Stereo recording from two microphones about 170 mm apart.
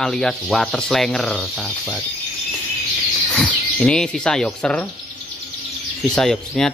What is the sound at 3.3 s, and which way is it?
Speech, 5° left (ahead or behind).